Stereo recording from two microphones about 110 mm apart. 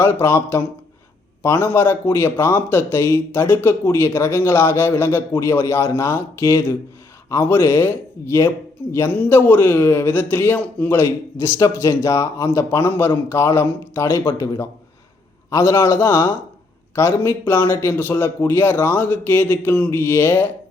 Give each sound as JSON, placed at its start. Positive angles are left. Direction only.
{"t": 0.0, "sound": "a man's voice", "side_deg": 20}
{"t": 14.4, "sound": "a man's voice", "side_deg": 35}